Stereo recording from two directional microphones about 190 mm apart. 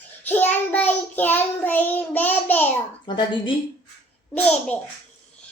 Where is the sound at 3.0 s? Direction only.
25° left (ahead or behind).